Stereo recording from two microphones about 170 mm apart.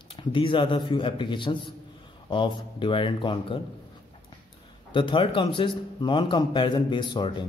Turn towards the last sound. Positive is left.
turn(degrees=25)  # may be behind; listen again after turning